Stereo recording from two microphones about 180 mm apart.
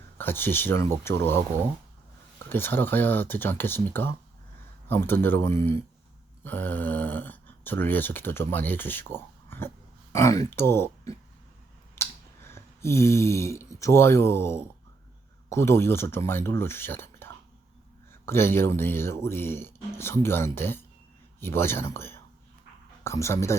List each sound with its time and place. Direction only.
0.2 s speech: 10° left (ahead or behind)
2.5 s speech: 10° left (ahead or behind)
12.0 s a sound: 15° left (ahead or behind)
12.5 s speech: 15° left (ahead or behind)